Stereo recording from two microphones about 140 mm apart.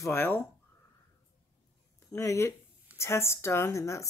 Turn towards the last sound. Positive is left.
turn(degrees=20)  # may be behind; listen again after turning